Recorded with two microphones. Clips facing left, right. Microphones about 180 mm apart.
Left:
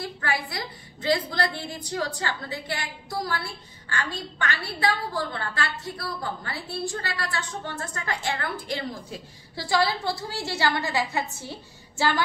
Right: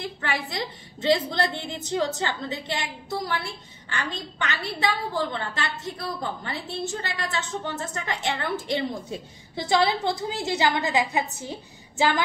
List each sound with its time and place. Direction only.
0.2 s a woman's voice: 20° right (ahead or behind)